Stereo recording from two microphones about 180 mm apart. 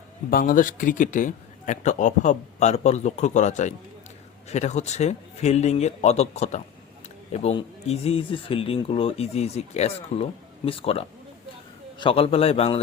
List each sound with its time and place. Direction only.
0.3 s a man's voice: 50° left (ahead or behind); by 12.8 s 35° left (ahead or behind)